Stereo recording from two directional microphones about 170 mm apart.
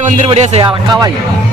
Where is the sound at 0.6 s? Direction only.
25° right (ahead or behind).